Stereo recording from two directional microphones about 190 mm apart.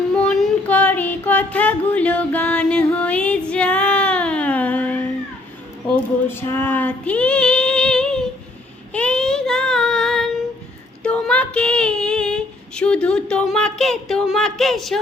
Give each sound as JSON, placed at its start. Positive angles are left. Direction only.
{"t": 0.3, "sound": "female singing", "side_deg": 10}
{"t": 6.2, "sound": "female singing", "side_deg": 10}
{"t": 8.9, "sound": "child singing", "side_deg": 5}